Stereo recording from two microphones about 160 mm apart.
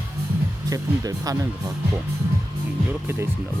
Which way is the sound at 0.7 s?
20° right (ahead or behind).